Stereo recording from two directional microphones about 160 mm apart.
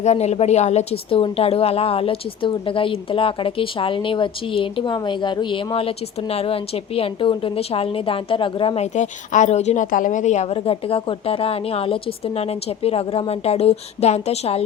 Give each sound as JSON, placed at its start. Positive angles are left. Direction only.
{"t": 0.0, "sound": "a woman's voice", "side_deg": 45}